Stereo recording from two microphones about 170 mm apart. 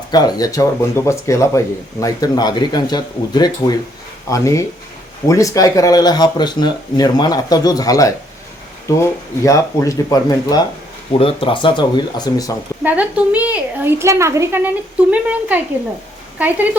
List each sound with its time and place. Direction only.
0.1 s speech: 25° left (ahead or behind)
12.8 s a woman's voice: 10° right (ahead or behind)